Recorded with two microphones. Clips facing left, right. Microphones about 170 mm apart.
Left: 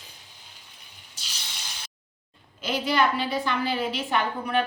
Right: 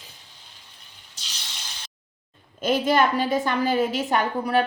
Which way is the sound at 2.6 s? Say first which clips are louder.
Right 4 dB; 50° right (ahead or behind).